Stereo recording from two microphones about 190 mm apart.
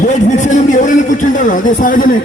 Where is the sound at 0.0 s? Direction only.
40° left (ahead or behind).